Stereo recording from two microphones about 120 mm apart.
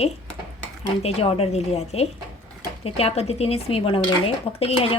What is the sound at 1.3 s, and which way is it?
Speech, 60° left (ahead or behind).